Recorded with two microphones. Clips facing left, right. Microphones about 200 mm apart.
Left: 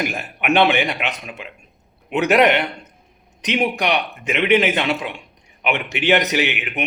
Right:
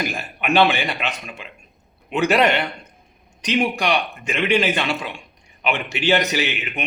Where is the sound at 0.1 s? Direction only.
15° left (ahead or behind).